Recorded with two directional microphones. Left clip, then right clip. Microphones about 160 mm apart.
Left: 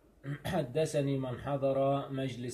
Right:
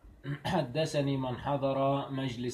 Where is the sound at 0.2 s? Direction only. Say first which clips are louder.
Right 3 dB; 15° left (ahead or behind).